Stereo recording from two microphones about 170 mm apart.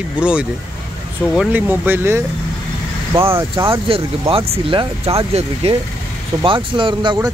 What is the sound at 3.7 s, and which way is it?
Speech, 35° right (ahead or behind).